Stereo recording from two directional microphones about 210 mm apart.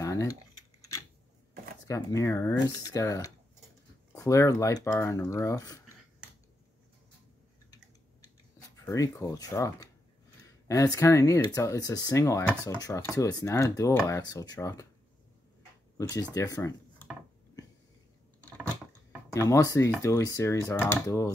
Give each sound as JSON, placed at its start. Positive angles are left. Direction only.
{"t": 0.0, "sound": "typing", "side_deg": 15}
{"t": 1.9, "sound": "speech", "side_deg": 15}
{"t": 8.7, "sound": "speech", "side_deg": 15}
{"t": 16.0, "sound": "speech", "side_deg": 15}
{"t": 17.6, "sound": "a sound", "side_deg": 15}
{"t": 19.3, "sound": "speech", "side_deg": 15}